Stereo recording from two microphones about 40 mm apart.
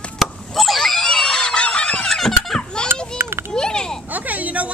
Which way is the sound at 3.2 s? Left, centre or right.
Right.